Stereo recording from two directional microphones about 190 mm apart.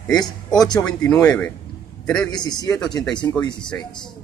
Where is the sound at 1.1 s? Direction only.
10° left (ahead or behind).